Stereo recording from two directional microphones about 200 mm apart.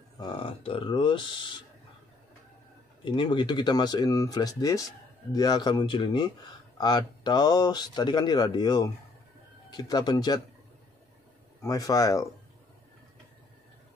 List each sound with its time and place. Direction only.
0.2 s speech: 25° left (ahead or behind)
3.1 s speech: 25° left (ahead or behind)
11.6 s speech: 15° left (ahead or behind)